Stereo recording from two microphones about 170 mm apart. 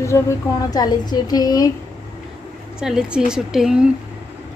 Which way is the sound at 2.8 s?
5° right (ahead or behind).